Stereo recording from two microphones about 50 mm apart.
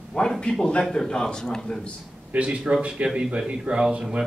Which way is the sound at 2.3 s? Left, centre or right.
Right.